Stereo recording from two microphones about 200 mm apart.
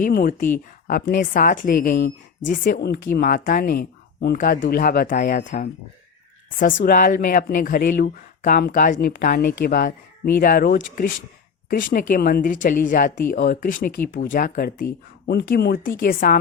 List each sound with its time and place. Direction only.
0.0 s speech: 45° left (ahead or behind)
15.3 s speech: 55° left (ahead or behind)